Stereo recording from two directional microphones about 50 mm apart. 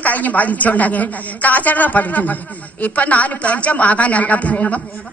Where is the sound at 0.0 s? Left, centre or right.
Left.